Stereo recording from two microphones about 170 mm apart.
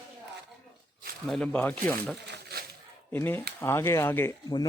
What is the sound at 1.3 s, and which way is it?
Speech, 5° left (ahead or behind).